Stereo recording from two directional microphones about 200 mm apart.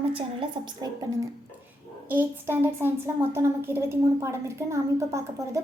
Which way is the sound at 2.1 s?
10° right (ahead or behind).